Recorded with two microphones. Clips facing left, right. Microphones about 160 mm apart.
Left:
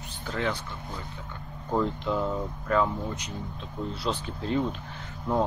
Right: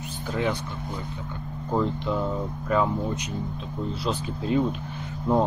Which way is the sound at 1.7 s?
Centre (ahead or behind).